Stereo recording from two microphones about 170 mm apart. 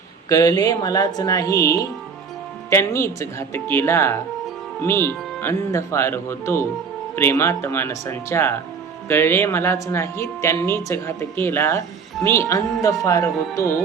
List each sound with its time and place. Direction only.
0.3 s speech: 20° left (ahead or behind)